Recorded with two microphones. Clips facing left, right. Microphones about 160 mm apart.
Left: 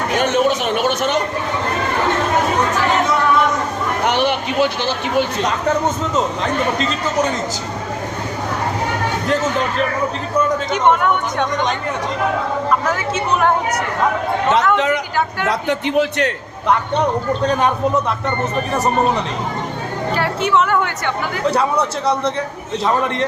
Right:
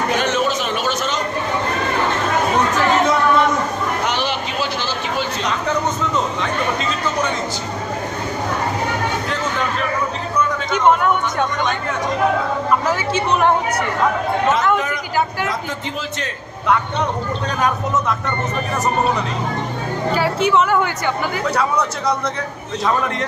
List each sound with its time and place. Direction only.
0.2 s a sound: 55° left (ahead or behind)
4.0 s a sound: 60° left (ahead or behind)
10.7 s speech: centre (ahead or behind)
12.8 s speech: centre (ahead or behind)
14.8 s vehicle: 75° left (ahead or behind)
16.0 s a man's voice: 65° left (ahead or behind)
20.1 s speech: centre (ahead or behind)
21.5 s a man's voice: 30° left (ahead or behind)